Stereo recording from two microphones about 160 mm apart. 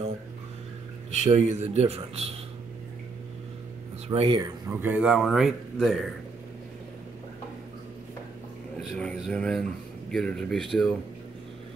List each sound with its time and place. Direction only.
1.1 s speech: 45° right (ahead or behind)
4.1 s speech: 35° right (ahead or behind)
4.4 s speech: 15° right (ahead or behind)
8.7 s a sound: centre (ahead or behind)
10.1 s speech: 5° left (ahead or behind)